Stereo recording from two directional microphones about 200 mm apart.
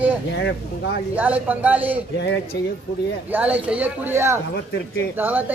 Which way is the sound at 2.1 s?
60° left (ahead or behind).